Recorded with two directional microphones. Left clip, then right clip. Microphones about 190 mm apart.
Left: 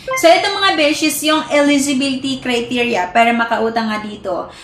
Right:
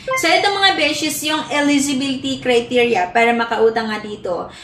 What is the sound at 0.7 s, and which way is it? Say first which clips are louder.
A woman's voice: left 3 dB; 20° left (ahead or behind).